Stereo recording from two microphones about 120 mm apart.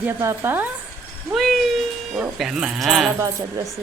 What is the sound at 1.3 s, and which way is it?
Speech, centre (ahead or behind).